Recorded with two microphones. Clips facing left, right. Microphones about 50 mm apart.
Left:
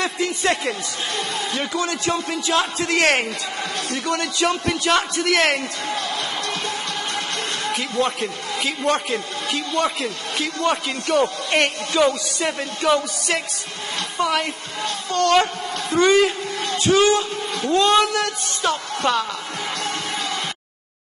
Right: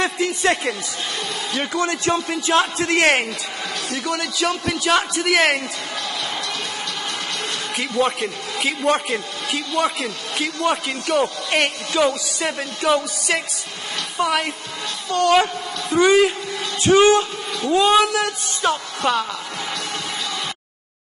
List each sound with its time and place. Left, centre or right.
0.0 s speech: right
1.8 s a man's voice: right
4.0 s a man's voice: centre
8.6 s a man's voice: centre
10.0 s speech: right
11.1 s a man's voice: centre
16.9 s speech: right
17.6 s a man's voice: centre